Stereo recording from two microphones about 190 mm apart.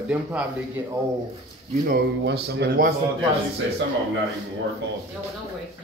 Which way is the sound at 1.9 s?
60° right (ahead or behind).